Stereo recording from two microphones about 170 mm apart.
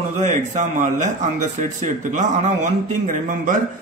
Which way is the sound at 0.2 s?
45° right (ahead or behind).